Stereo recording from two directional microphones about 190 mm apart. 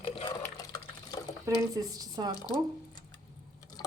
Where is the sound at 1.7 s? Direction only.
20° right (ahead or behind).